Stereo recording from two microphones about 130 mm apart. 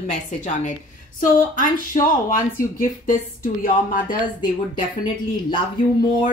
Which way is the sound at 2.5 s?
90° left.